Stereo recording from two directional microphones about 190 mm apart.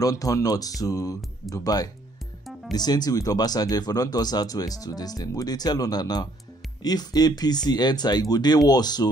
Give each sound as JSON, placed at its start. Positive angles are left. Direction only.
{"t": 0.0, "sound": "speech", "side_deg": 20}